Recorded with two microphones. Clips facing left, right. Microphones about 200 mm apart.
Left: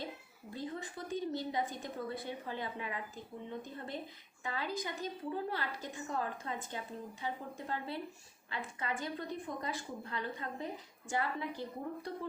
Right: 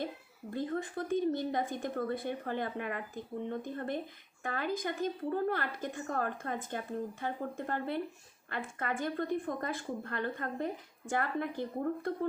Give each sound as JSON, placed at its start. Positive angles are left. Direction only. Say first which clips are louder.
{"t": 0.5, "sound": "a woman's voice", "louder": "right 7 dB", "side_deg": -55}